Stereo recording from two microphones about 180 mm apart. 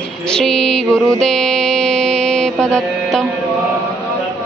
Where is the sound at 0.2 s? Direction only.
5° left (ahead or behind).